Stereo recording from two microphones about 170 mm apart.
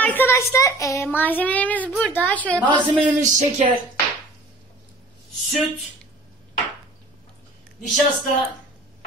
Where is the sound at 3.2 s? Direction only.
45° right (ahead or behind).